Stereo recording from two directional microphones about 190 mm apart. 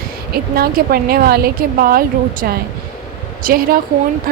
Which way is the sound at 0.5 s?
50° right (ahead or behind).